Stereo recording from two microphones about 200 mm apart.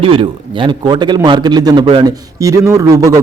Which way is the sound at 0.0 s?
25° right (ahead or behind).